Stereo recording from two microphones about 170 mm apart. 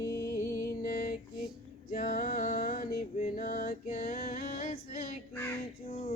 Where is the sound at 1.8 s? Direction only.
55° left (ahead or behind).